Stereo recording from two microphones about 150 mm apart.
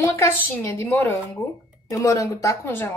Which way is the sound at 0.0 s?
20° left (ahead or behind).